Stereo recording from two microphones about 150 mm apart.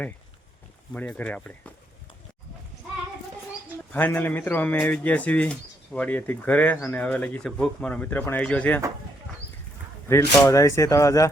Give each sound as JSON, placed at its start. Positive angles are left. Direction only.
{"t": 0.9, "sound": "speech", "side_deg": 10}
{"t": 3.9, "sound": "speech", "side_deg": 10}
{"t": 10.1, "sound": "speech", "side_deg": 15}